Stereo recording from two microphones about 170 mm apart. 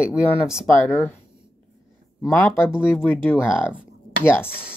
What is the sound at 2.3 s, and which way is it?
Speech, 10° left (ahead or behind).